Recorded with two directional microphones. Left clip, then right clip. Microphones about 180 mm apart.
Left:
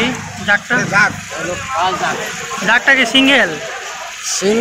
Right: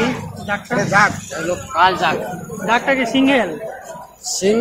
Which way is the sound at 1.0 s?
15° right (ahead or behind).